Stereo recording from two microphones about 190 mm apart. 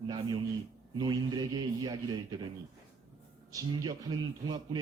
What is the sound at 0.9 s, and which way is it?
A man's voice, 20° right (ahead or behind).